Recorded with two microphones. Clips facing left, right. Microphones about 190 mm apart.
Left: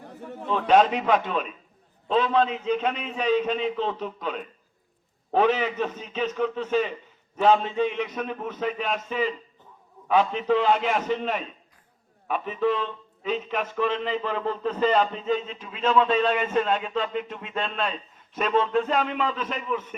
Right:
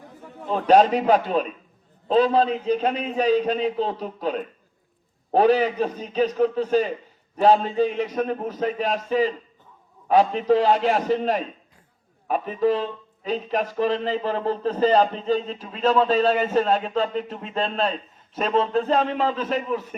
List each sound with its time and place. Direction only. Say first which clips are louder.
0.4 s a man's voice: right 3 dB; 40° right (ahead or behind)